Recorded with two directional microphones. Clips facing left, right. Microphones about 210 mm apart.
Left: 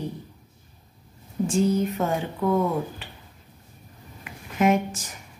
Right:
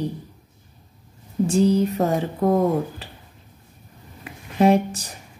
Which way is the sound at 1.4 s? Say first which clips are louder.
Right 4 dB; 35° right (ahead or behind).